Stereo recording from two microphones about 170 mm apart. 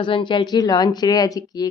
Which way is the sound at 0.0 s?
30° left (ahead or behind).